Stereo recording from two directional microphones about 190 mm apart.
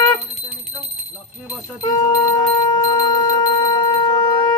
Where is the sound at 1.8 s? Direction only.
25° left (ahead or behind).